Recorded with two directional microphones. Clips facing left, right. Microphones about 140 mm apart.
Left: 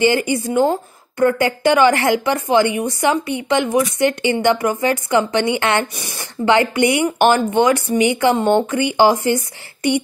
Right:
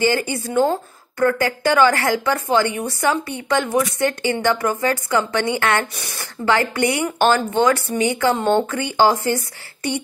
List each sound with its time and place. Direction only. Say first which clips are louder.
0.0 s speech: left 3 dB; 20° left (ahead or behind)